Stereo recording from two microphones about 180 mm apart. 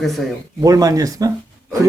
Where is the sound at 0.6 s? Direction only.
20° right (ahead or behind).